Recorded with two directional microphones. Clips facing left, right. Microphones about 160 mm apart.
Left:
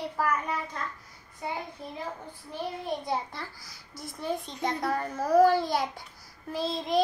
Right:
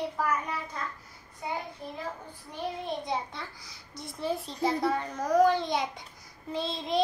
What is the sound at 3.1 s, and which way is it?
Child singing, centre (ahead or behind).